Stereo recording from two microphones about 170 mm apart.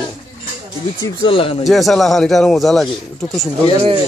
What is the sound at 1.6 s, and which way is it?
A man's voice, centre (ahead or behind).